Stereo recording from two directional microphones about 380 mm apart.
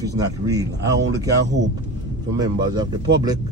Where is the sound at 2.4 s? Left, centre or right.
Centre.